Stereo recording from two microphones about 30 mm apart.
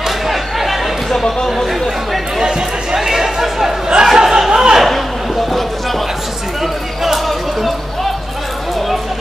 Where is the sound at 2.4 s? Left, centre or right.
Right.